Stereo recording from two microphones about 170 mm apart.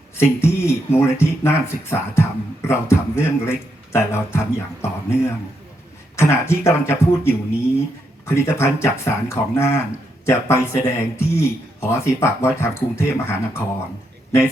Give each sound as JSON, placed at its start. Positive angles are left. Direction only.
{"t": 0.2, "sound": "speech", "side_deg": 15}
{"t": 6.1, "sound": "speech", "side_deg": 15}